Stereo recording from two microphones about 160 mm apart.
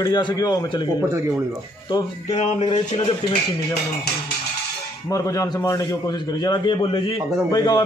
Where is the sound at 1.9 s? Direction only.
40° left (ahead or behind).